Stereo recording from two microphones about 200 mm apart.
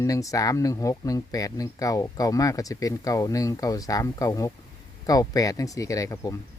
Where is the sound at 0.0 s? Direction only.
15° left (ahead or behind).